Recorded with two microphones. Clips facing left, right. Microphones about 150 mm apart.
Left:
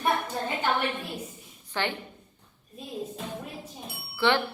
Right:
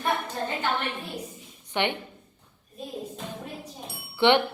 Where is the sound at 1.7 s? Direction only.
20° right (ahead or behind).